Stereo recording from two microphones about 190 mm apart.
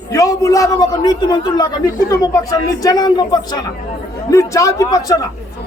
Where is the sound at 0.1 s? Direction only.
15° left (ahead or behind).